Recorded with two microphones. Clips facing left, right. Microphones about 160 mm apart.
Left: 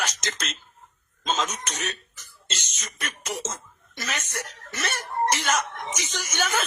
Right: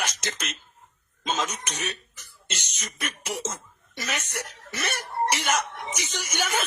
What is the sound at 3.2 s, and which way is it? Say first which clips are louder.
Speech: left 1 dB; 10° right (ahead or behind).